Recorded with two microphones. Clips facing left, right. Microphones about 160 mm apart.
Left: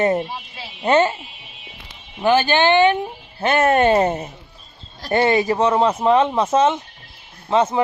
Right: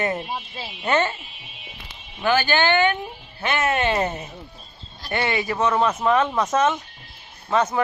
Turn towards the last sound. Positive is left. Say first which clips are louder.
# left 4 dB
turn(degrees=25)  # may be behind; listen again after turning